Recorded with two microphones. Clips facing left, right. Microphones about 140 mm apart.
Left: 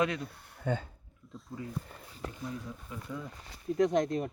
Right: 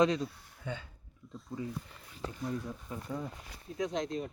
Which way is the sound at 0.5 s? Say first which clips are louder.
Left 7 dB; 50° left (ahead or behind).